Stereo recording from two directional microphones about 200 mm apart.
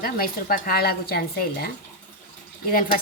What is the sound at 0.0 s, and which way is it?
A woman's voice, 45° left (ahead or behind).